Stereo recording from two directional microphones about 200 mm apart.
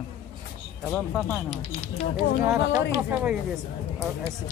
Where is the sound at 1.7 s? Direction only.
35° left (ahead or behind).